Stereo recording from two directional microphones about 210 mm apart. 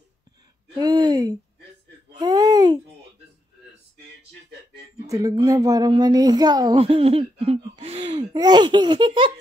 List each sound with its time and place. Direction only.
0.7 s speech: 20° right (ahead or behind)
2.1 s babbling: 15° right (ahead or behind)
5.0 s speech: 15° right (ahead or behind)
8.2 s speech: 20° right (ahead or behind)